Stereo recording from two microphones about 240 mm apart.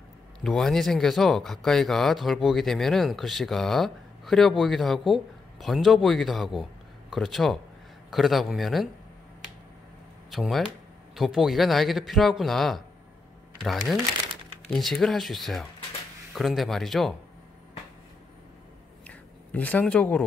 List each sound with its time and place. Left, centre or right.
0.4 s speech: centre
10.3 s speech: centre
19.0 s a sound: centre